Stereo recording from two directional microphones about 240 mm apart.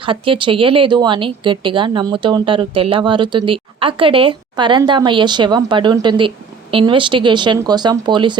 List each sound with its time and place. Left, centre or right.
0.0 s speech: right